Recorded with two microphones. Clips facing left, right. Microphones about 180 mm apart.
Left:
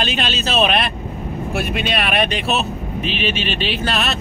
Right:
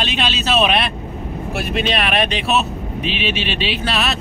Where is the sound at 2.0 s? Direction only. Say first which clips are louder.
Even; centre (ahead or behind).